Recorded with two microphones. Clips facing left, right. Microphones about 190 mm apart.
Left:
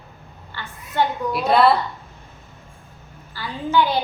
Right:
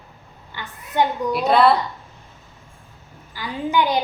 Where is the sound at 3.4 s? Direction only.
15° right (ahead or behind).